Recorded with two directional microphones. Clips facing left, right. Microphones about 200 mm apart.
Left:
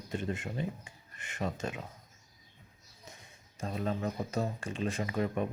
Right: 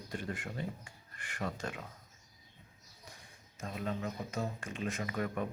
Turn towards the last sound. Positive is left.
turn(degrees=25)  # may be behind; listen again after turning